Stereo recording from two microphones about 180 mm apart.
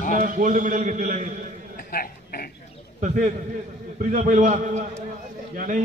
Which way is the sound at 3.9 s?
45° right (ahead or behind).